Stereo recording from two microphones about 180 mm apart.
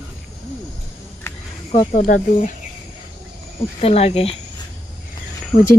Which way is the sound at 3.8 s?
35° left (ahead or behind).